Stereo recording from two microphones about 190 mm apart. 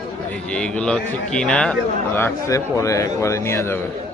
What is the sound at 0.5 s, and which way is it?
A man's voice, 5° left (ahead or behind).